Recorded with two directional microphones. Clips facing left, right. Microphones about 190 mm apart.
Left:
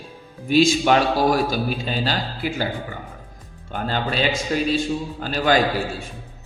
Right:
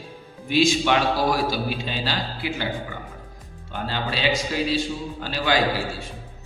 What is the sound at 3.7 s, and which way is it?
A man's voice, 50° left (ahead or behind).